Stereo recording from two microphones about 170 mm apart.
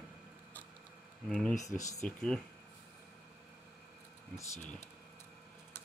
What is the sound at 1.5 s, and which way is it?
Speech, 20° left (ahead or behind).